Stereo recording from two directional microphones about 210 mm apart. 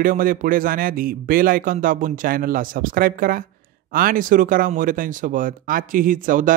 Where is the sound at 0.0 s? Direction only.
40° right (ahead or behind).